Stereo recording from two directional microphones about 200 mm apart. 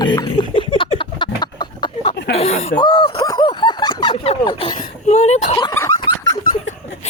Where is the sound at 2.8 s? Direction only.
20° left (ahead or behind).